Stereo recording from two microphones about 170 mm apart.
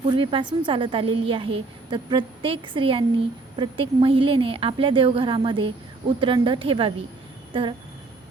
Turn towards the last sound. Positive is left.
turn(degrees=-30)  # may be behind; listen again after turning